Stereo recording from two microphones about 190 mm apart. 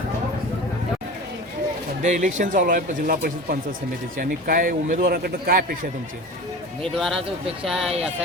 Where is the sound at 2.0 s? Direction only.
40° right (ahead or behind).